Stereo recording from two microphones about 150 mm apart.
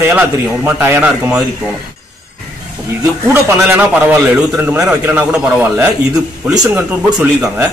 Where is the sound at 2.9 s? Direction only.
20° right (ahead or behind).